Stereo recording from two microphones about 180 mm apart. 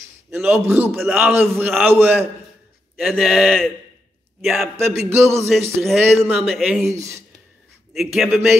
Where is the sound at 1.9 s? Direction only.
10° right (ahead or behind).